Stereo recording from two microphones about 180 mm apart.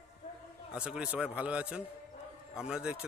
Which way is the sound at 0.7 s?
5° right (ahead or behind).